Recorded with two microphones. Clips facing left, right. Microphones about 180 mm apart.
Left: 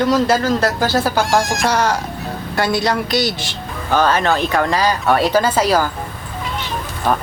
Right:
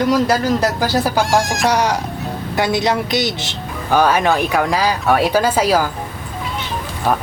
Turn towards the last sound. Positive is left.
turn(degrees=-5)  # may be behind; listen again after turning